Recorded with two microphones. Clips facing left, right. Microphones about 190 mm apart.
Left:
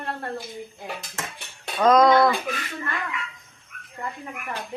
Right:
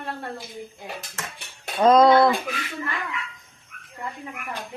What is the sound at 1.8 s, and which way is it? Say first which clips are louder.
Speech: right 1 dB; 25° right (ahead or behind).